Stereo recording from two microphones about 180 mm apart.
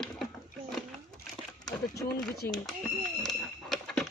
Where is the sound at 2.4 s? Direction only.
15° left (ahead or behind).